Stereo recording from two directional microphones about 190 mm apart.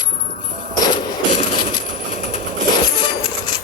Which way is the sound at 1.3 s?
30° left (ahead or behind).